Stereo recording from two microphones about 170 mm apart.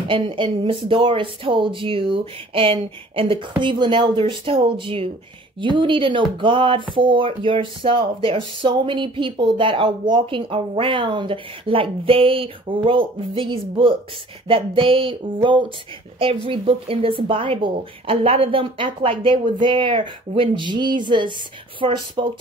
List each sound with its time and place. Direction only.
0.1 s a woman's voice: 30° right (ahead or behind)